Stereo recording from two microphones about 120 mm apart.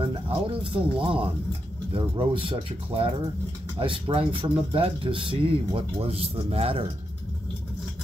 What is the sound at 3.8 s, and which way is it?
Speech, 50° right (ahead or behind).